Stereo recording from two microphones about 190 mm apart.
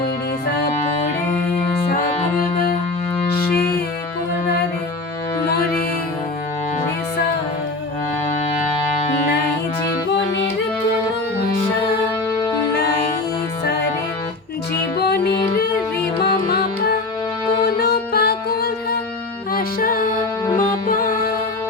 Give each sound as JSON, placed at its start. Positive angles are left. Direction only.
{"t": 3.2, "sound": "music", "side_deg": 55}
{"t": 14.9, "sound": "music", "side_deg": 60}
{"t": 17.7, "sound": "music", "side_deg": 55}